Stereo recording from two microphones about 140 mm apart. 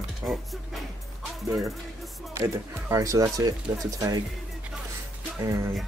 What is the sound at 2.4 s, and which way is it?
Speech, 25° right (ahead or behind).